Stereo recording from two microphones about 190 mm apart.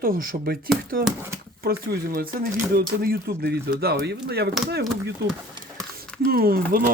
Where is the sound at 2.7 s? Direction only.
55° right (ahead or behind).